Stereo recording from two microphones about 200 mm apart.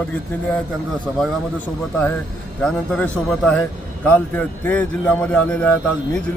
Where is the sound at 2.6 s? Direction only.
5° left (ahead or behind).